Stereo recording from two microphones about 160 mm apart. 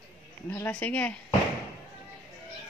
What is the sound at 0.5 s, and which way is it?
Speech, 10° left (ahead or behind).